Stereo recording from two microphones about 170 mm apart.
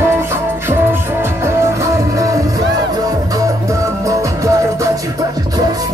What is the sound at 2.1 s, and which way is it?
Music, 20° right (ahead or behind).